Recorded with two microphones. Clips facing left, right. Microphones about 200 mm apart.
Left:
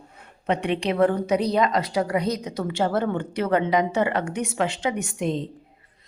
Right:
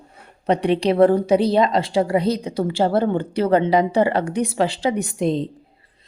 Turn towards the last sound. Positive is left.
turn(degrees=-35)  # may be behind; listen again after turning